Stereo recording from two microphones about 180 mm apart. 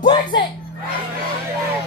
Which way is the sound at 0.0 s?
25° left (ahead or behind).